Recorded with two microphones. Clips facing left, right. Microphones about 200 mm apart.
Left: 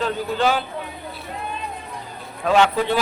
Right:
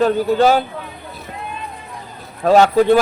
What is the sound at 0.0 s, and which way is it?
Speech, 45° right (ahead or behind).